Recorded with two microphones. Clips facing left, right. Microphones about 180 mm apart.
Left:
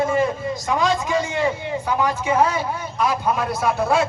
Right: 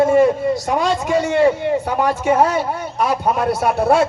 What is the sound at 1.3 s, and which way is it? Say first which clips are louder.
A man's voice: right 8 dB; 65° right (ahead or behind).